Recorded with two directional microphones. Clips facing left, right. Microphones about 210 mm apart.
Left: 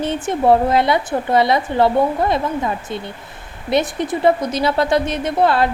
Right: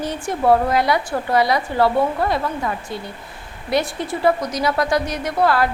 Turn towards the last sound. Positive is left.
turn(degrees=25)  # may be behind; listen again after turning